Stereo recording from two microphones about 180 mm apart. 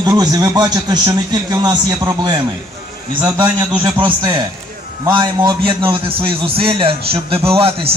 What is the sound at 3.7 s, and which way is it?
A man's voice, 25° right (ahead or behind).